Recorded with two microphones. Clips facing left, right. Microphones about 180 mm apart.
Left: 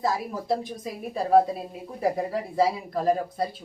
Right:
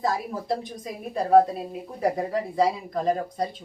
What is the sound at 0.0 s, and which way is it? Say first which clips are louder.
A woman's voice: even; centre (ahead or behind).